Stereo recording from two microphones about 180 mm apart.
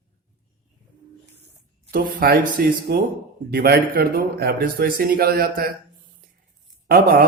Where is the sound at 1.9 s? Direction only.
50° right (ahead or behind).